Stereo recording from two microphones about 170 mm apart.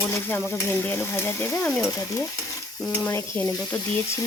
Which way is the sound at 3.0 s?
10° left (ahead or behind).